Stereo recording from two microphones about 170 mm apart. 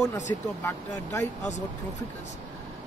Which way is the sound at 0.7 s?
20° left (ahead or behind).